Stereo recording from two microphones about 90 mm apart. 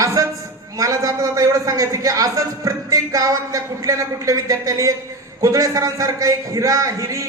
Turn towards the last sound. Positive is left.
turn(degrees=-35)  # may be behind; listen again after turning